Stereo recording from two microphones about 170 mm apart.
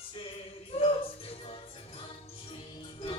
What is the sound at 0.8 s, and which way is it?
Music, 35° left (ahead or behind).